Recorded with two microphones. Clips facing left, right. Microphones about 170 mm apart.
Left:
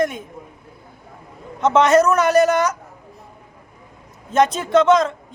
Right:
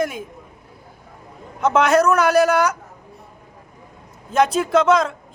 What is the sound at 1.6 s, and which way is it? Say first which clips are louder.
A man's voice: left 2 dB; centre (ahead or behind).